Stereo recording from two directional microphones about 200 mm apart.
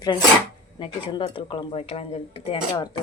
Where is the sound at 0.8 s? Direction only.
25° left (ahead or behind).